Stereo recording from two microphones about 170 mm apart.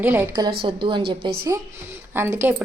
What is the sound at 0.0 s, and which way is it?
Speech, 10° right (ahead or behind).